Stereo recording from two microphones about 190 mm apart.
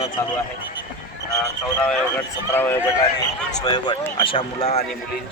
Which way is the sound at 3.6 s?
20° left (ahead or behind).